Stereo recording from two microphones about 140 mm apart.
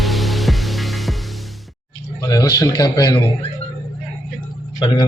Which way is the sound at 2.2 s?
25° left (ahead or behind).